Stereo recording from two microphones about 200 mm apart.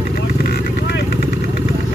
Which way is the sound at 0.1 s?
50° left (ahead or behind).